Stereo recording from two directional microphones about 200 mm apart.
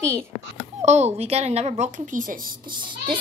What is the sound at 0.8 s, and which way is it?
A woman's voice, 35° right (ahead or behind).